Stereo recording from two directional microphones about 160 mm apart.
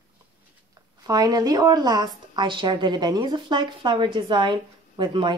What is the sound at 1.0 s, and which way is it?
A woman's voice, 25° right (ahead or behind).